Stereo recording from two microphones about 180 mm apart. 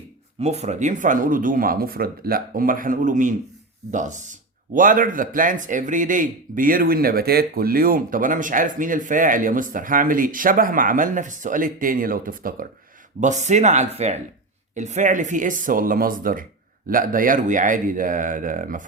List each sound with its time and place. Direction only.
0.3 s speech: 35° right (ahead or behind)
13.1 s speech: 40° right (ahead or behind)